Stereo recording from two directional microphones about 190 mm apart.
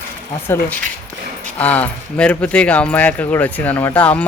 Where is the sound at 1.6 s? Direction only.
10° left (ahead or behind).